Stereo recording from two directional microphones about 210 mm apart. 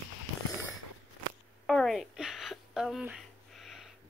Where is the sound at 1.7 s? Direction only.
Centre (ahead or behind).